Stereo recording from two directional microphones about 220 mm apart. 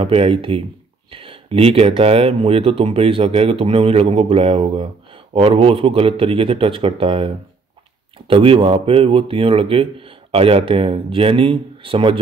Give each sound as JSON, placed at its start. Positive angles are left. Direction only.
{"t": 0.0, "sound": "speech", "side_deg": -25}